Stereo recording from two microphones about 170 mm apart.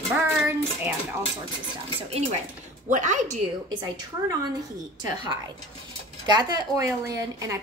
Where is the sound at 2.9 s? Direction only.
45° right (ahead or behind).